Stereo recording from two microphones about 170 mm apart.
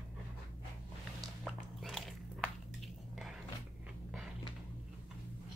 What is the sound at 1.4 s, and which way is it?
Biting, centre (ahead or behind).